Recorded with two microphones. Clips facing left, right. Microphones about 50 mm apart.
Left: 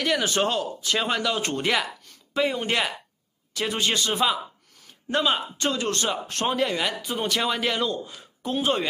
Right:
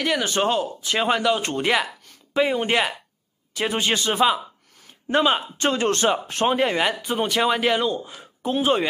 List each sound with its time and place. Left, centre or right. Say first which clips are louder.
0.0 s a man's voice: right 2 dB; centre; by 6.1 s right
6.2 s speech: right 4 dB; centre
7.2 s speech: right 5 dB; centre